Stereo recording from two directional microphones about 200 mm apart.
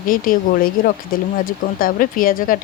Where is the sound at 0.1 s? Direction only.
45° left (ahead or behind).